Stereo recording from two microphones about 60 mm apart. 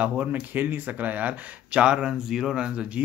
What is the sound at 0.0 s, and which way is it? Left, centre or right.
Speech, right.